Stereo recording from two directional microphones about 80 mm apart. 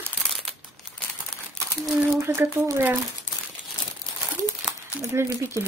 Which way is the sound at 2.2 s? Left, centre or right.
Right.